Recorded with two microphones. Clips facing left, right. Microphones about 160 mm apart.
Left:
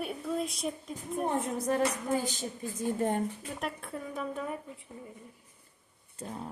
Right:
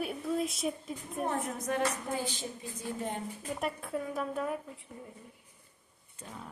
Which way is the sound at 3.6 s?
Centre (ahead or behind).